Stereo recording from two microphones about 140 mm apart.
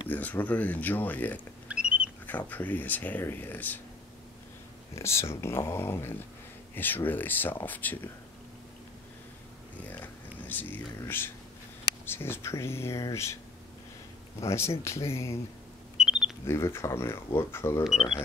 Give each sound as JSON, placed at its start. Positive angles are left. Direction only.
{"t": 0.1, "sound": "speech", "side_deg": 10}
{"t": 1.7, "sound": "rodents", "side_deg": -10}
{"t": 2.2, "sound": "speech", "side_deg": 10}
{"t": 4.9, "sound": "speech", "side_deg": 20}
{"t": 9.8, "sound": "speech", "side_deg": 15}
{"t": 14.4, "sound": "speech", "side_deg": 20}
{"t": 16.0, "sound": "a sound", "side_deg": -5}
{"t": 16.4, "sound": "speech", "side_deg": 20}